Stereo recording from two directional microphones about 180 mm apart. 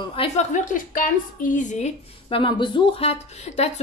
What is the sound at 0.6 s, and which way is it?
A woman's voice, 50° left (ahead or behind).